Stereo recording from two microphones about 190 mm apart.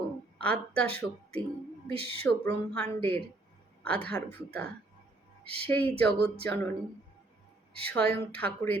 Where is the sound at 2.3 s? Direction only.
10° left (ahead or behind).